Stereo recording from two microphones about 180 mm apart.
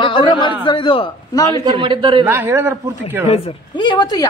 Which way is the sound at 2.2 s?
10° right (ahead or behind).